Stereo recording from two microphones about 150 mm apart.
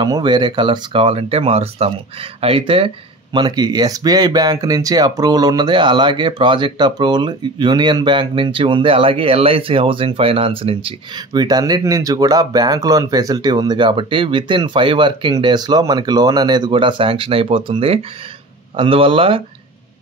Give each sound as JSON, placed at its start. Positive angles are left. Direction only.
{"t": 0.0, "sound": "speech", "side_deg": -30}
{"t": 3.3, "sound": "speech", "side_deg": -25}